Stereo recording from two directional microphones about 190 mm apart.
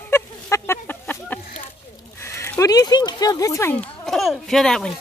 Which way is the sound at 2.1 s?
15° left (ahead or behind).